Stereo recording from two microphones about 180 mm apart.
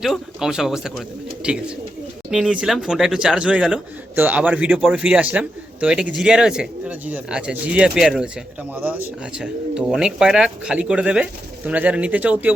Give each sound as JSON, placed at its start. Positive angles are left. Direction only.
{"t": 0.0, "sound": "a man's voice", "side_deg": 0}